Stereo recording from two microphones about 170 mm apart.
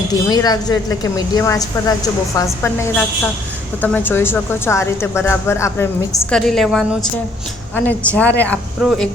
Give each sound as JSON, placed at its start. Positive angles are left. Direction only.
{"t": 0.3, "sound": "a woman's voice", "side_deg": 20}
{"t": 6.3, "sound": "a woman's voice", "side_deg": 0}
{"t": 8.8, "sound": "a woman's voice", "side_deg": 0}